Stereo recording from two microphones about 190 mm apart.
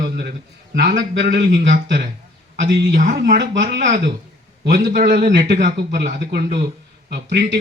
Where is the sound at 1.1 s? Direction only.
60° right (ahead or behind); by 2.0 s 45° right (ahead or behind).